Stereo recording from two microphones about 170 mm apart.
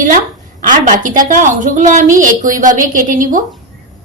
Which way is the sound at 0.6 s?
50° right (ahead or behind).